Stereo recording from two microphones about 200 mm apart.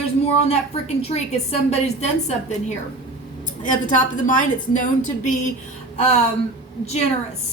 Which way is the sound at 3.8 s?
40° left (ahead or behind).